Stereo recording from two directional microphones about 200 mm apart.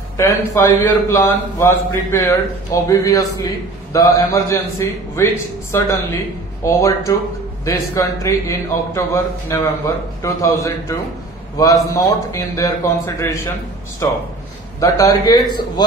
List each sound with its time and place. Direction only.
0.2 s a man's voice: 15° left (ahead or behind)